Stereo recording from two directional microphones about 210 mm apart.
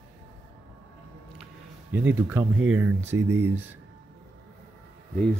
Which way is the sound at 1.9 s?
10° right (ahead or behind).